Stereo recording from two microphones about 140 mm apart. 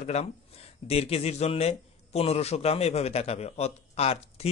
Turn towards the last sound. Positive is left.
turn(degrees=50)  # may be behind; listen again after turning